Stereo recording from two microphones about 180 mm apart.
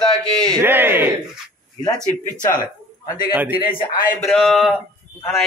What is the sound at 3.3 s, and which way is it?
Speech, 10° right (ahead or behind).